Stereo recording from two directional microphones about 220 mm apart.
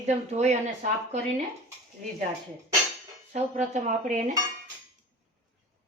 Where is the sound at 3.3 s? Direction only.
30° right (ahead or behind).